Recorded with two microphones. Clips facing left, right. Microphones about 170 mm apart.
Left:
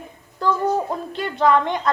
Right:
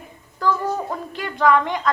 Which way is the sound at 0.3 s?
20° left (ahead or behind).